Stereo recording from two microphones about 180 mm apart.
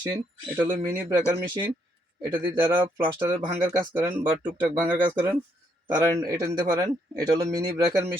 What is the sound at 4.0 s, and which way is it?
Speech, 10° right (ahead or behind).